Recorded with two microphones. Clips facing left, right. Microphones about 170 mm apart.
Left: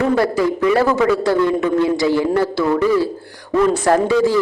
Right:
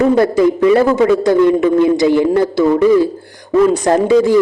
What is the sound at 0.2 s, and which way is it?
A man's voice, 20° right (ahead or behind).